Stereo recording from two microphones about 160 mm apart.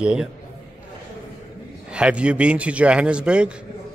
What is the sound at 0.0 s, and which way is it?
Speech, 5° right (ahead or behind).